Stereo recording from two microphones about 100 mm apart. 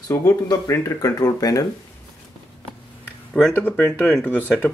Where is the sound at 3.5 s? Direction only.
15° left (ahead or behind).